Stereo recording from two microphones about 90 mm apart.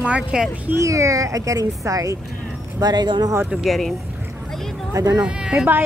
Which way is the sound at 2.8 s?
55° right (ahead or behind).